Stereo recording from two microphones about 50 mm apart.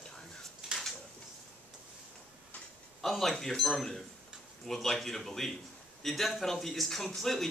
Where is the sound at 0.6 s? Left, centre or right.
Centre.